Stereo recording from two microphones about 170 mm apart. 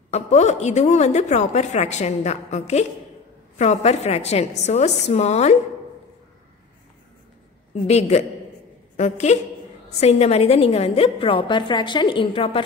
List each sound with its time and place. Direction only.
0.1 s a woman's voice: 40° left (ahead or behind)
7.8 s a woman's voice: 40° left (ahead or behind)